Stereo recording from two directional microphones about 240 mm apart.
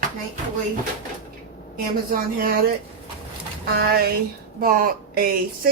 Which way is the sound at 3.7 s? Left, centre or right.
Right.